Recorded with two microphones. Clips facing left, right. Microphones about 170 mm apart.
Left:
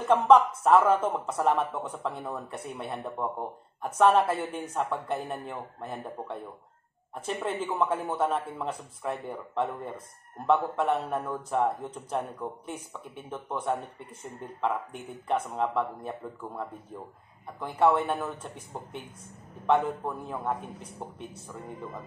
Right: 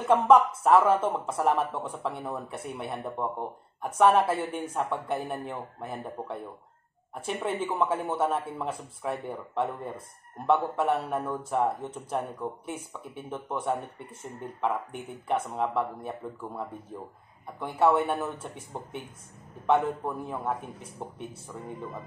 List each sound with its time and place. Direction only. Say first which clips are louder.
0.0 s speech: even; 5° right (ahead or behind)